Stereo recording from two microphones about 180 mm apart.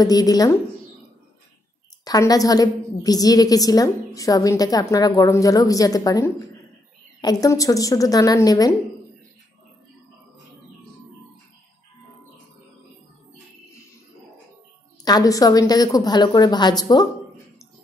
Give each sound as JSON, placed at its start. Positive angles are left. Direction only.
{"t": 0.0, "sound": "a woman's voice", "side_deg": 20}
{"t": 2.0, "sound": "a woman's voice", "side_deg": 20}
{"t": 15.0, "sound": "a woman's voice", "side_deg": 20}